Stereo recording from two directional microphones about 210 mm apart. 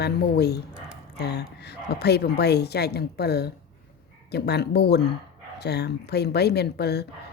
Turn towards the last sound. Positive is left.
turn(degrees=50)  # may be behind; listen again after turning